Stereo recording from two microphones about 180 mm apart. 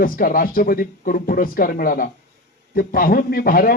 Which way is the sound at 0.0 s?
50° left (ahead or behind).